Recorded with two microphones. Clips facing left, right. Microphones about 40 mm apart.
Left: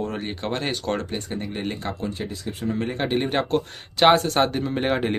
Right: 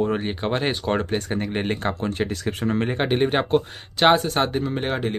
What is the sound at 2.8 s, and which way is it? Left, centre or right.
Speech, right.